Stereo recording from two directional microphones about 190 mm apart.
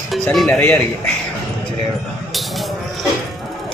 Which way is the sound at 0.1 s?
Centre (ahead or behind).